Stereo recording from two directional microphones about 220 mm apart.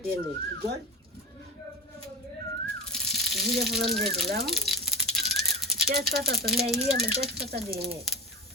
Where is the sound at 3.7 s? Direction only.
45° right (ahead or behind).